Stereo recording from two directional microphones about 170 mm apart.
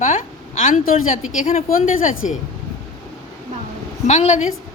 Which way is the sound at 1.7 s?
55° left (ahead or behind).